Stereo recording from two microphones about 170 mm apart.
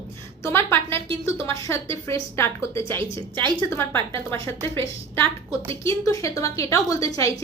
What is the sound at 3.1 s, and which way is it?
Speech, 30° right (ahead or behind).